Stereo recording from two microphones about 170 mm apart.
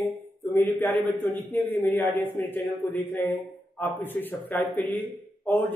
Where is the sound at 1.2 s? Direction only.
10° left (ahead or behind).